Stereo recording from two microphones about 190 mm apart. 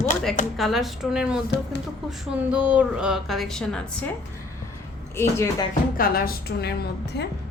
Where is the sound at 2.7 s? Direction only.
5° right (ahead or behind).